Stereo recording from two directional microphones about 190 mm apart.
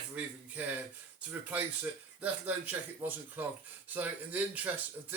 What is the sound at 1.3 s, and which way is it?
Speech, 10° right (ahead or behind).